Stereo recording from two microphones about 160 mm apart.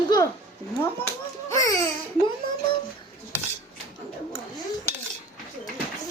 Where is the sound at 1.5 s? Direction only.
20° left (ahead or behind).